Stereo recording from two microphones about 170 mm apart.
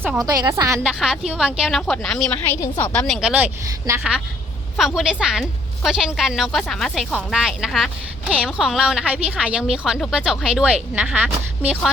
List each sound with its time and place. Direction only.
0.0 s a woman's voice: 5° right (ahead or behind)
0.3 s a woman's voice: 20° right (ahead or behind)
0.8 s a woman's voice: centre (ahead or behind)